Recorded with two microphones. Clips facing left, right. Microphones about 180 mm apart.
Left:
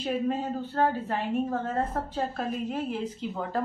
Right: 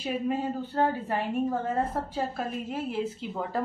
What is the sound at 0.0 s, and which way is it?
A woman's voice, 10° right (ahead or behind).